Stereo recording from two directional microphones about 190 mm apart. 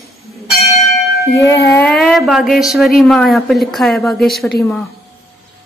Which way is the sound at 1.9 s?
Centre (ahead or behind).